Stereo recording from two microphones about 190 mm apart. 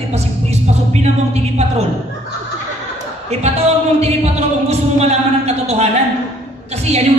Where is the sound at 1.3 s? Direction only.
35° right (ahead or behind).